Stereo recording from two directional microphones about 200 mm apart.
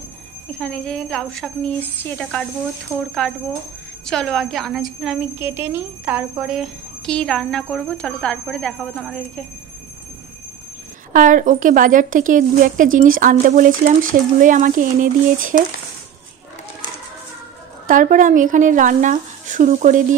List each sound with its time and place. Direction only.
0.6 s speech: 5° left (ahead or behind)
11.1 s a woman's voice: 40° right (ahead or behind)
17.8 s a woman's voice: 40° right (ahead or behind)